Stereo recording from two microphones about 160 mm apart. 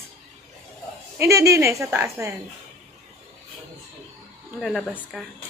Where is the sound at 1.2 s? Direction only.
20° right (ahead or behind).